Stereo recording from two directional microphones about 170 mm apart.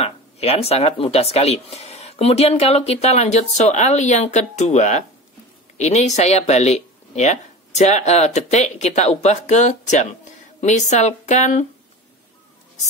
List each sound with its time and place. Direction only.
0.0 s speech: 35° left (ahead or behind)